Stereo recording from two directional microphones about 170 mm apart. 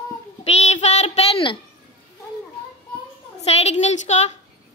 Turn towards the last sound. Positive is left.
turn(degrees=40)  # may be behind; listen again after turning